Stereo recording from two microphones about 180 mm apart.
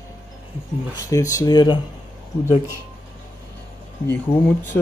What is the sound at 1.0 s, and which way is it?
Speech, 20° left (ahead or behind).